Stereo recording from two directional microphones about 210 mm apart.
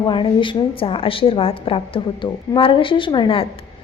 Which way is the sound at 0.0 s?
25° left (ahead or behind).